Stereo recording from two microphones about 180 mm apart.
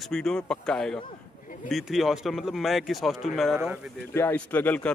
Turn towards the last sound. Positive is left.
turn(degrees=10)  # may be behind; listen again after turning